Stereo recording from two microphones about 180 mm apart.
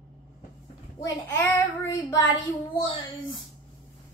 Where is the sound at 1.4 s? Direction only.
20° left (ahead or behind).